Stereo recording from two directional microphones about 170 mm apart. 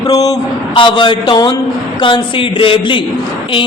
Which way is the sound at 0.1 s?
20° left (ahead or behind).